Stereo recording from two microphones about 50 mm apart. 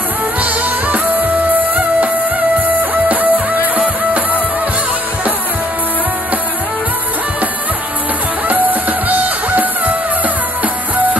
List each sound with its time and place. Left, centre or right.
0.4 s music: right
8.5 s music: right